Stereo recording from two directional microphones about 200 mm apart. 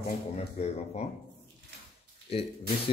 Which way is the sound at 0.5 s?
35° left (ahead or behind).